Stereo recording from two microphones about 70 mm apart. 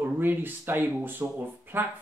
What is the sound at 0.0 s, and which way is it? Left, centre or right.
Speech, right.